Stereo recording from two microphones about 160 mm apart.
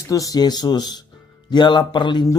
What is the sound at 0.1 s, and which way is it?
Speech, 20° left (ahead or behind).